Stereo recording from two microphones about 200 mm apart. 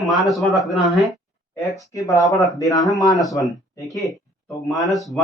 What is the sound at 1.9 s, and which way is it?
Speech, 15° left (ahead or behind).